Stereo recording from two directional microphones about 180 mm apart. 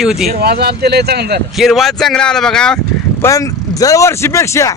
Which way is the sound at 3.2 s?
20° left (ahead or behind).